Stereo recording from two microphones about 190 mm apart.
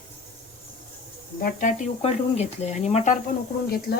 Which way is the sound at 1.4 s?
45° left (ahead or behind).